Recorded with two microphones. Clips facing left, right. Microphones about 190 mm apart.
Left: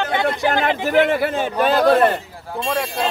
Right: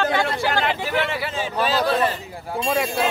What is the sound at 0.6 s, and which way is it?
A man's voice, 50° left (ahead or behind).